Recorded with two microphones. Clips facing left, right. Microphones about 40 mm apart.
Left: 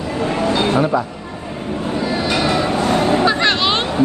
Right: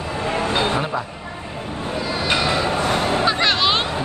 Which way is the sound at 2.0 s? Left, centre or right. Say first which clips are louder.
Left 2 dB; left.